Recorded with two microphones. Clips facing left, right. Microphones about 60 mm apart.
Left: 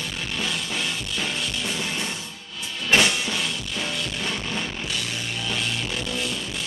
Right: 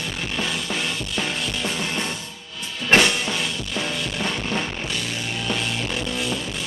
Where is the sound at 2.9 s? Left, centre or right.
Right.